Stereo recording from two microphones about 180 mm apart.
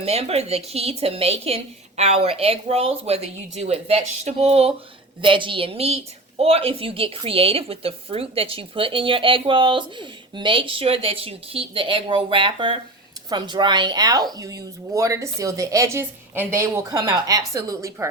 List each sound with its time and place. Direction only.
0.0 s a woman's voice: 35° right (ahead or behind); by 18.1 s 15° right (ahead or behind)